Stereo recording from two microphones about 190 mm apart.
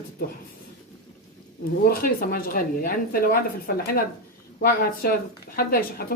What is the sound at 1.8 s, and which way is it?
Speech, 50° left (ahead or behind).